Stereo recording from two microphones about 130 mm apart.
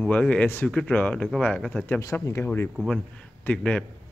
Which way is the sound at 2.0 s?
25° left (ahead or behind).